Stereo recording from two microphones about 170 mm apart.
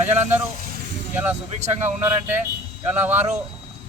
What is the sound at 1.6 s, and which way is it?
Speech, 40° right (ahead or behind).